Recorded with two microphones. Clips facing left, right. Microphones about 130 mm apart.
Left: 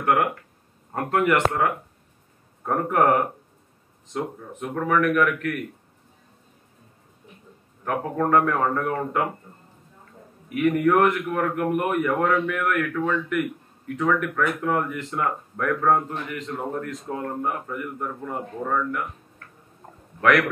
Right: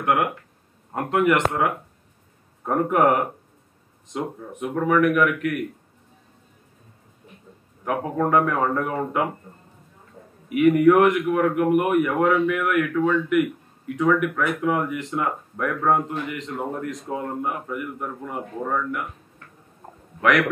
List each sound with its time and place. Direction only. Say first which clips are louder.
0.9 s speech: right 1 dB; 15° right (ahead or behind)
4.1 s speech: even; 15° right (ahead or behind)
7.8 s speech: right 1 dB; 10° right (ahead or behind)
10.5 s speech: right 4 dB; 10° right (ahead or behind)
20.2 s a man's voice: even; 15° right (ahead or behind)